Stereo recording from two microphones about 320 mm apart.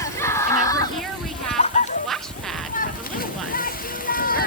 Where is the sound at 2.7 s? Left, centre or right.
Left.